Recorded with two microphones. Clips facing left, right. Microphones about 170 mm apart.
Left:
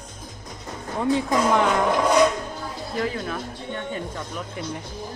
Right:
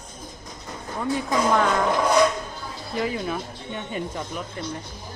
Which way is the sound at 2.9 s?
10° right (ahead or behind).